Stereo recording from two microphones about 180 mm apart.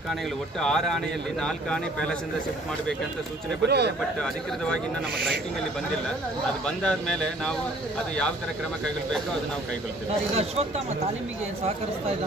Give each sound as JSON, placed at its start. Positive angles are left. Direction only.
{"t": 0.6, "sound": "a man's voice", "side_deg": 5}
{"t": 3.6, "sound": "speech", "side_deg": -65}
{"t": 6.6, "sound": "a man's voice", "side_deg": 5}
{"t": 10.3, "sound": "speech", "side_deg": -35}